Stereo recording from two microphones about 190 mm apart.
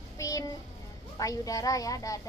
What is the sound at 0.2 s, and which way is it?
Music, 20° left (ahead or behind).